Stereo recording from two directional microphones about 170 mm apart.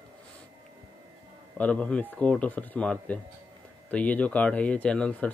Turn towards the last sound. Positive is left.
turn(degrees=5)  # may be behind; listen again after turning